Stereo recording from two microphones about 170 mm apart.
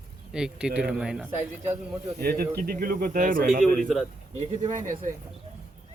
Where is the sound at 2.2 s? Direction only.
65° right (ahead or behind).